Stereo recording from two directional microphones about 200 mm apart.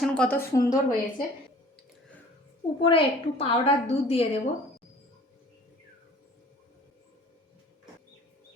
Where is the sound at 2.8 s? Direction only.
25° left (ahead or behind).